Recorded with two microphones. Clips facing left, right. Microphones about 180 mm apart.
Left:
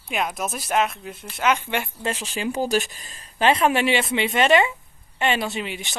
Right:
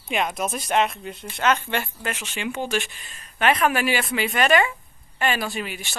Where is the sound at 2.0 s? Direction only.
35° left (ahead or behind).